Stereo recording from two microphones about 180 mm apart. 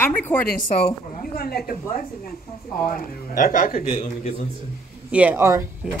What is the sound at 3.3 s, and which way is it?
A man's voice, 50° left (ahead or behind).